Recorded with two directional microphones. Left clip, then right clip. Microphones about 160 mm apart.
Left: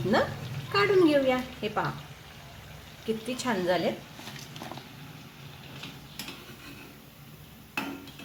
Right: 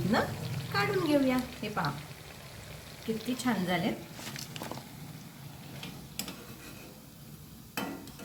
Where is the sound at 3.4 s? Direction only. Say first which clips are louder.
Left 3 dB; 65° left (ahead or behind).